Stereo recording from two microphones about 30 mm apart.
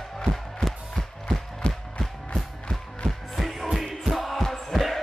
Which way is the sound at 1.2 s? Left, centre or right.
Left.